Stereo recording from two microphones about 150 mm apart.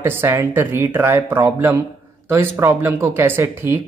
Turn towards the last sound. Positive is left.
turn(degrees=-15)  # may be behind; listen again after turning